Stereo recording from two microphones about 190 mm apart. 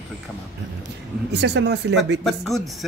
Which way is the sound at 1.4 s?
65° right (ahead or behind).